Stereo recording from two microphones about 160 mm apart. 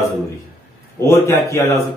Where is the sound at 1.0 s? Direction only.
15° left (ahead or behind).